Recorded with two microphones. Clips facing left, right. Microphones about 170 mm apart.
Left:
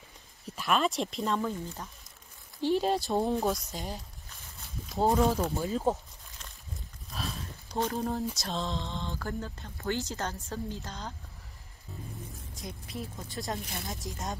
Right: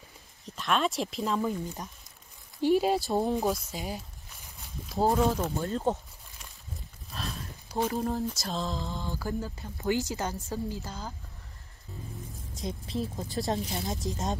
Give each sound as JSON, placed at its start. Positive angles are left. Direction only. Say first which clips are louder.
{"t": 0.6, "sound": "speech", "louder": "even", "side_deg": 5}
{"t": 1.5, "sound": "speech", "louder": "right 3 dB", "side_deg": -15}
{"t": 7.1, "sound": "speech", "louder": "even", "side_deg": 0}
{"t": 12.6, "sound": "a woman's voice", "louder": "right 7 dB", "side_deg": -25}